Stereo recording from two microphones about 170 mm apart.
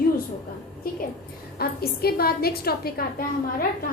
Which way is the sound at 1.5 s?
65° left (ahead or behind).